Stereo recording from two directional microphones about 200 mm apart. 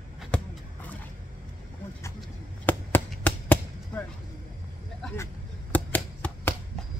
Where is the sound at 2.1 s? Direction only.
10° left (ahead or behind).